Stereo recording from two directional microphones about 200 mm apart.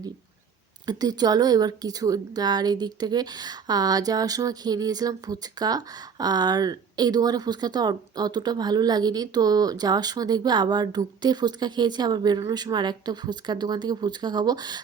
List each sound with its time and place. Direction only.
0.9 s a woman's voice: 20° right (ahead or behind)